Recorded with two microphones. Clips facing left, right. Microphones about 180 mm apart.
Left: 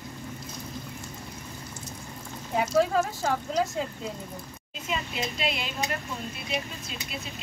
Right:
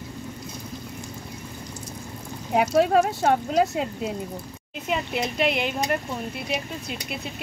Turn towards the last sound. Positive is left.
turn(degrees=-60)  # may be behind; listen again after turning